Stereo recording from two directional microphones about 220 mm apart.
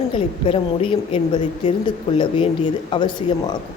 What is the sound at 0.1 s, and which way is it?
A woman's voice, 25° left (ahead or behind).